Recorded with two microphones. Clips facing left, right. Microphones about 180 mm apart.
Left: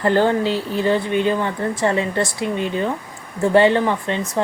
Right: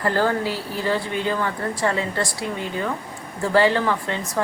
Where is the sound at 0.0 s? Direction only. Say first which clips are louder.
Left 5 dB; 25° left (ahead or behind).